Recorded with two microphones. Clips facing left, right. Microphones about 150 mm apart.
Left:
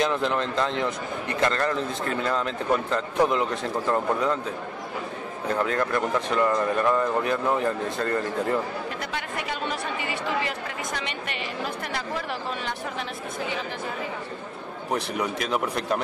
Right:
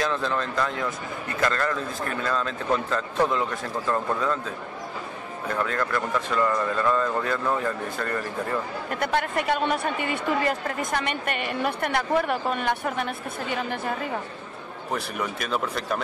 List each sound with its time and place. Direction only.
0.0 s a man's voice: 20° left (ahead or behind)
9.0 s a woman's voice: 55° right (ahead or behind)
14.9 s a man's voice: 20° left (ahead or behind)